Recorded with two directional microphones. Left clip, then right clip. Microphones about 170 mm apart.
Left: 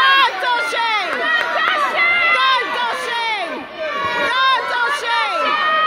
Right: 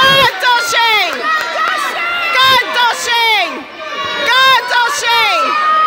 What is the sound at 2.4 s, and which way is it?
Run, 15° right (ahead or behind).